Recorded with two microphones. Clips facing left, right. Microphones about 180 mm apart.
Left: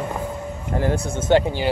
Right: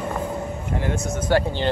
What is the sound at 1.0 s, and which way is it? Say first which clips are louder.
Speech: left 2 dB; 25° left (ahead or behind).